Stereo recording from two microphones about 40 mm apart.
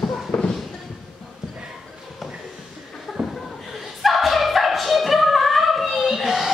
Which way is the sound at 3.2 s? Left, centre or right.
Right.